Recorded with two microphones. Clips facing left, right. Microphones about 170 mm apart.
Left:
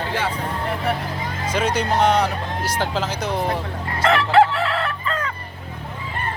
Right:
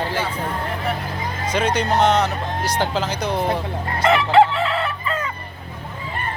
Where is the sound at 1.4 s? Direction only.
5° left (ahead or behind).